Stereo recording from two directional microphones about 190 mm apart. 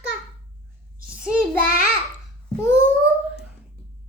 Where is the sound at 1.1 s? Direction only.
5° right (ahead or behind).